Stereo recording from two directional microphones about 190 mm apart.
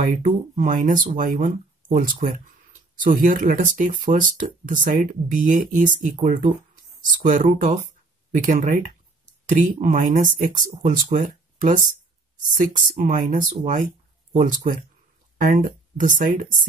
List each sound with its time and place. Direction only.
0.0 s speech: 45° right (ahead or behind)